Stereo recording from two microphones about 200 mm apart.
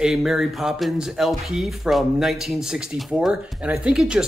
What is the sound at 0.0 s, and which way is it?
Speech, centre (ahead or behind).